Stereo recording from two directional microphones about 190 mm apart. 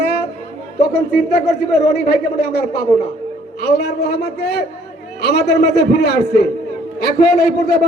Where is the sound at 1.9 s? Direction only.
55° left (ahead or behind).